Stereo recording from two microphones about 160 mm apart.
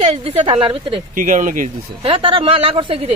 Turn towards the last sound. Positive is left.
turn(degrees=-35)  # may be behind; listen again after turning